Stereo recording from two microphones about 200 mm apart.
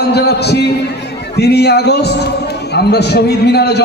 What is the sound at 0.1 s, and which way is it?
A man's voice, 55° left (ahead or behind).